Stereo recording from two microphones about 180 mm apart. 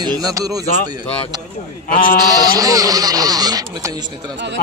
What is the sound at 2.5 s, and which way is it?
Speech, 20° right (ahead or behind).